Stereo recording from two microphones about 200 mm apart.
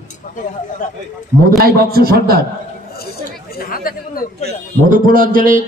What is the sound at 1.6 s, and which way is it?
Speech, 50° right (ahead or behind).